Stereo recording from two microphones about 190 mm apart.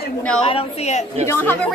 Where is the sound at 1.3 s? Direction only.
10° left (ahead or behind).